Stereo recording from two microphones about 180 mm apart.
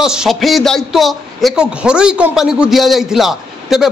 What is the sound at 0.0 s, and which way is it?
A man's voice, 5° right (ahead or behind).